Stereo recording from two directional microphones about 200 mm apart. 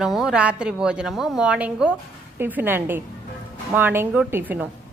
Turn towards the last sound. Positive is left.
turn(degrees=-10)  # may be behind; listen again after turning